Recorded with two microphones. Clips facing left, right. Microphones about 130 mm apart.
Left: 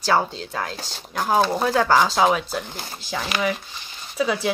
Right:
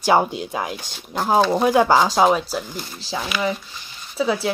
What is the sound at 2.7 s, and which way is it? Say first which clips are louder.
Speech: right 2 dB; 50° left (ahead or behind).